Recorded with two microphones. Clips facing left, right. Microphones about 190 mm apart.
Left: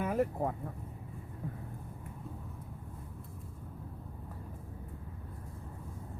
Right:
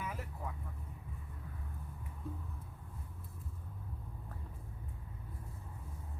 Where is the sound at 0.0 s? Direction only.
55° left (ahead or behind).